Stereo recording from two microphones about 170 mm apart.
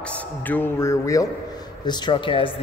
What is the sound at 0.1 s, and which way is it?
A man's voice, 10° left (ahead or behind).